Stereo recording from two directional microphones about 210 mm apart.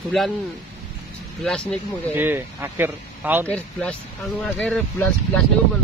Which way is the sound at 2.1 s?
10° right (ahead or behind).